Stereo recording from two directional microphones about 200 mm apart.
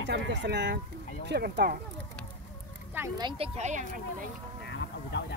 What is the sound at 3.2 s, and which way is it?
Speech, 25° right (ahead or behind).